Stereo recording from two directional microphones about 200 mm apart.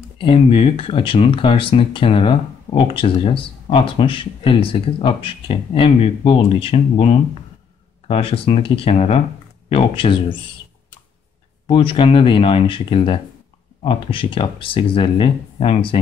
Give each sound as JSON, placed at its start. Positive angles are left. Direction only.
{"t": 0.2, "sound": "speech", "side_deg": 25}
{"t": 11.6, "sound": "speech", "side_deg": 25}